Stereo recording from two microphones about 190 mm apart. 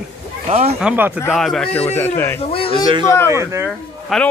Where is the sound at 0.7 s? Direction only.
10° right (ahead or behind).